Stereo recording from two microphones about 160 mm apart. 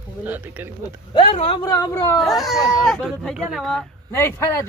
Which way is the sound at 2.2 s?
Centre (ahead or behind).